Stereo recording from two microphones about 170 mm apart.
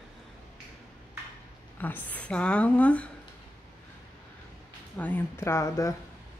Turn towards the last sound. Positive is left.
turn(degrees=20)  # may be behind; listen again after turning